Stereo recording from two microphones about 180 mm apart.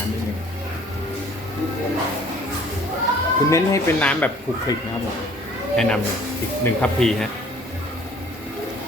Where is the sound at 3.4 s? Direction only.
15° left (ahead or behind).